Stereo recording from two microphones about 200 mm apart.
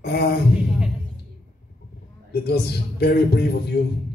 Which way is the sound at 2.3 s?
50° left (ahead or behind).